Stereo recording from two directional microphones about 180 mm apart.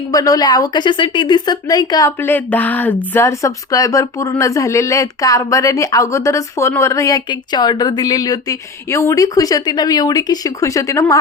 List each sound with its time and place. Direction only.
0.1 s a woman's voice: 20° left (ahead or behind)